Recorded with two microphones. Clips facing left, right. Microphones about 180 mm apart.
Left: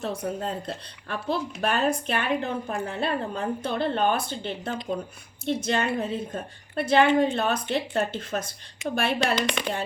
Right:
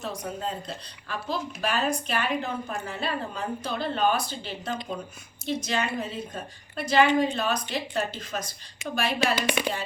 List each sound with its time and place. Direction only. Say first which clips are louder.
0.0 s speech: left 3 dB; 55° left (ahead or behind)
9.3 s speech: even; 5° right (ahead or behind)